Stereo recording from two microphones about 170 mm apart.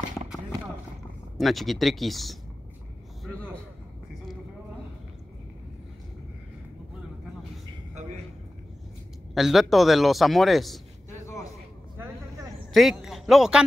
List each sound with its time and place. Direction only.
1.4 s a man's voice: centre (ahead or behind)
9.3 s a man's voice: centre (ahead or behind)
11.1 s a sound: 20° left (ahead or behind)
12.7 s speech: centre (ahead or behind)